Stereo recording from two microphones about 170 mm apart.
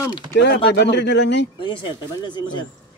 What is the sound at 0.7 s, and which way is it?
Speech, 80° left.